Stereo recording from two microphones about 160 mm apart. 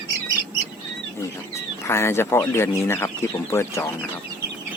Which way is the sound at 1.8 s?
15° left (ahead or behind).